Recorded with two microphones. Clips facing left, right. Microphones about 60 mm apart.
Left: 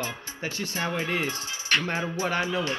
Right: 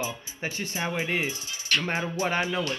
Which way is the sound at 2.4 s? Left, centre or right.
Left.